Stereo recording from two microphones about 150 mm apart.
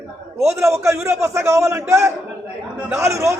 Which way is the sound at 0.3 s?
20° right (ahead or behind).